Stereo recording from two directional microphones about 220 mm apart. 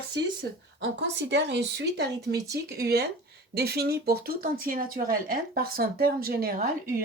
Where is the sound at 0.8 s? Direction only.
55° right (ahead or behind).